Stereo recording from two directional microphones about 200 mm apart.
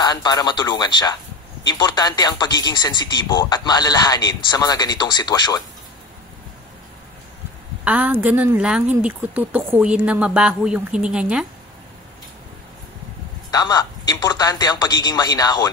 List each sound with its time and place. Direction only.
0.0 s speech: 20° left (ahead or behind)
7.8 s speech: 10° right (ahead or behind)
13.5 s speech: 20° left (ahead or behind)